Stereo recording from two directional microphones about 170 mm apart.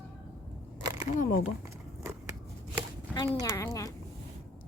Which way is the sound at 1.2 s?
55° left (ahead or behind).